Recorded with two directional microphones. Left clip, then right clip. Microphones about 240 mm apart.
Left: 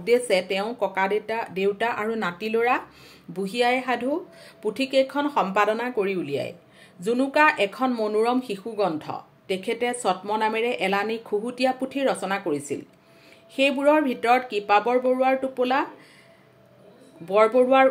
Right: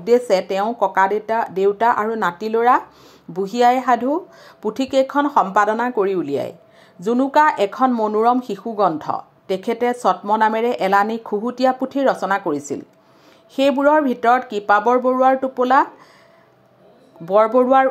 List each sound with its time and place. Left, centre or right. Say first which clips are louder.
0.0 s speech: right 5 dB; centre
17.2 s speech: right 4 dB; centre